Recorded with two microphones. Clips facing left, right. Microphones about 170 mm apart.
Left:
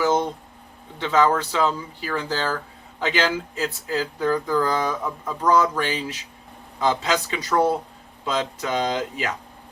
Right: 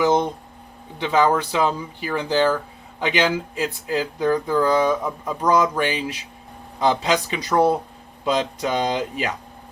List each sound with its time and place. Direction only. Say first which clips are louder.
0.9 s speech: right 1 dB; 15° right (ahead or behind)